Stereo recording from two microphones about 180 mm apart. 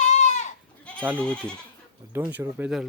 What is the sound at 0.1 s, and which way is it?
Goat, 40° left (ahead or behind).